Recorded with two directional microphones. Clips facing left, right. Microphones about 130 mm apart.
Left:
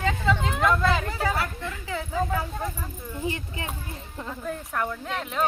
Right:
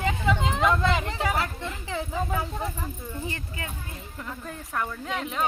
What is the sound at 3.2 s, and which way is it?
Speech, 20° left (ahead or behind).